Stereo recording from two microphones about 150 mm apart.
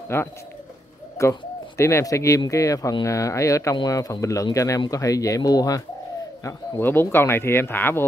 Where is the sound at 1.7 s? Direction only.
20° left (ahead or behind).